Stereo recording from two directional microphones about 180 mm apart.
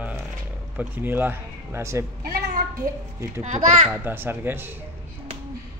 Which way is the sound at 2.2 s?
55° right (ahead or behind).